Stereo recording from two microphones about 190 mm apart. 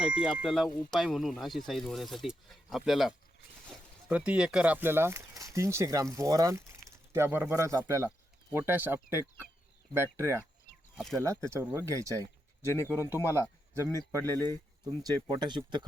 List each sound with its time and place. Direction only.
0.0 s speech: 5° right (ahead or behind)
10.9 s speech: centre (ahead or behind)
11.2 s speech: 15° right (ahead or behind)